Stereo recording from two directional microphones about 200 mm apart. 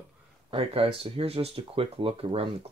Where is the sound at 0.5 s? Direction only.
25° right (ahead or behind).